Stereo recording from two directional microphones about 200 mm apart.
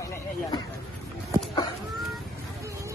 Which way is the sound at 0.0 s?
15° left (ahead or behind).